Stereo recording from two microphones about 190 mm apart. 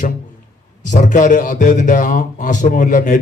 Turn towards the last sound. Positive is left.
turn(degrees=40)  # may be behind; listen again after turning